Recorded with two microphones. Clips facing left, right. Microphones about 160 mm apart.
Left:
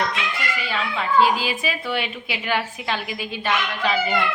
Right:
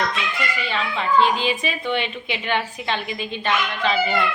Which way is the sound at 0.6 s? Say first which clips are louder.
Right 1 dB; 5° left (ahead or behind).